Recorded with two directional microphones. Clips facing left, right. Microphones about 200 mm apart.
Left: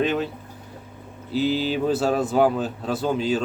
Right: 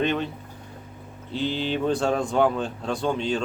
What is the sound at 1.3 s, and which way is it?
Speech, 5° left (ahead or behind).